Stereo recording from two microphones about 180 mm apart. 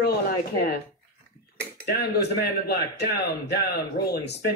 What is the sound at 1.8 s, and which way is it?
Speech, 60° left (ahead or behind).